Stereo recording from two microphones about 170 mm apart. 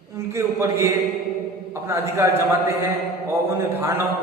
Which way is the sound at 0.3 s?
15° right (ahead or behind).